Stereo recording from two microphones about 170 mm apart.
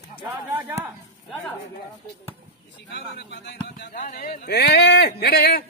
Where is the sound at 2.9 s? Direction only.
90° left.